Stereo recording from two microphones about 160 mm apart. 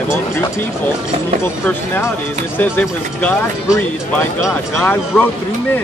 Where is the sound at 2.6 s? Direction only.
10° left (ahead or behind).